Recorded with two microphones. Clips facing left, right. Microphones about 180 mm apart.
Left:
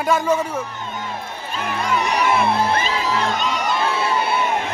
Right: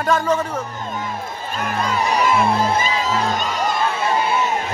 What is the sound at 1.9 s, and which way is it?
Music, 65° left (ahead or behind).